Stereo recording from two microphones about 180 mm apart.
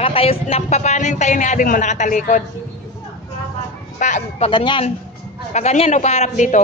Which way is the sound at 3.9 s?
45° left (ahead or behind).